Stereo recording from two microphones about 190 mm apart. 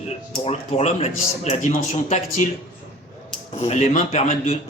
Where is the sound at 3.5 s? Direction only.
35° left (ahead or behind).